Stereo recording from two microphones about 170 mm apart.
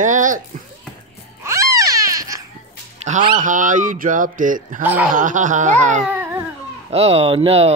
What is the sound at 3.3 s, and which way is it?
Speech, 50° right (ahead or behind).